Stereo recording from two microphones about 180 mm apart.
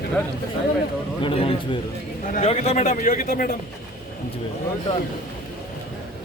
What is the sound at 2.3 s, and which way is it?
A man's voice, 40° left (ahead or behind).